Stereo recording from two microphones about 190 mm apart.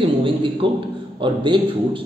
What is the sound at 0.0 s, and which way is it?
A man's voice, 25° right (ahead or behind).